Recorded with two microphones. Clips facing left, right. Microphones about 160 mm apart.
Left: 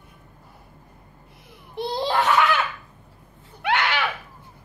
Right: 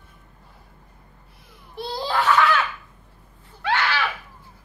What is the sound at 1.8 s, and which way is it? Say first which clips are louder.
Laughter: left 2 dB; 20° left (ahead or behind).